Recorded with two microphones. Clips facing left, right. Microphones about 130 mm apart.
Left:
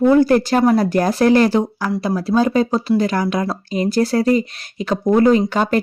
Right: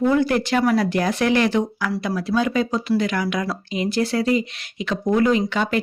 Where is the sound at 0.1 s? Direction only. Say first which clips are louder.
Left 6 dB; 40° left (ahead or behind).